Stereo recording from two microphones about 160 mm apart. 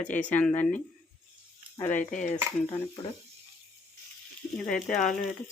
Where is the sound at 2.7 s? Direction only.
30° left (ahead or behind).